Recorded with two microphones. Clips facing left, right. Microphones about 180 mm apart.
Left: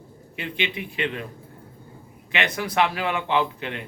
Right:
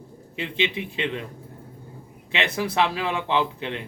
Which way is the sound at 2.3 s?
30° right (ahead or behind).